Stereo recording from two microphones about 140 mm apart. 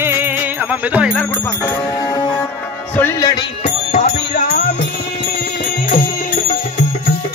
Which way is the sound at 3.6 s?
65° left (ahead or behind).